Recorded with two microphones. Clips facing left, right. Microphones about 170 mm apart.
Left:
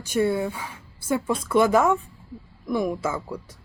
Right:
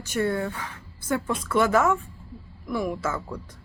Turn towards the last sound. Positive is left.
turn(degrees=10)  # may be behind; listen again after turning